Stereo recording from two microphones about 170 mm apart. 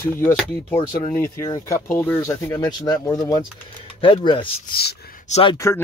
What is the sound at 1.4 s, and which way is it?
Speech, 20° left (ahead or behind).